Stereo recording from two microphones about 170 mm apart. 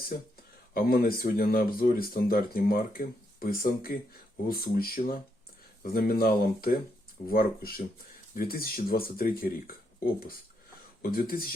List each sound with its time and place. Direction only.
0.1 s speech: 60° left (ahead or behind)
11.1 s speech: 60° left (ahead or behind)